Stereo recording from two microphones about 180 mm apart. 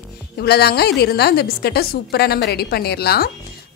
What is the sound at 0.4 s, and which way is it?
A woman's voice, 60° left (ahead or behind).